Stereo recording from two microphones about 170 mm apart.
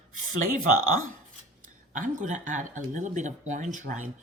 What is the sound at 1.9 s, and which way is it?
Speech, 45° right (ahead or behind).